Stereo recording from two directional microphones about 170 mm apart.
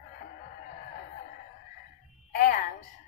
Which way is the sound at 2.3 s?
55° left (ahead or behind).